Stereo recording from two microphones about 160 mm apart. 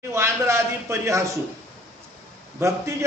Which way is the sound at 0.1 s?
15° right (ahead or behind).